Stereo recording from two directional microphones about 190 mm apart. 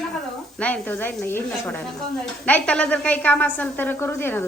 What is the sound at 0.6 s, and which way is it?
Speech, 10° left (ahead or behind).